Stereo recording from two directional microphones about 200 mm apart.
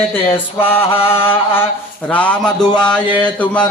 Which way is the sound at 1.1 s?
10° left (ahead or behind).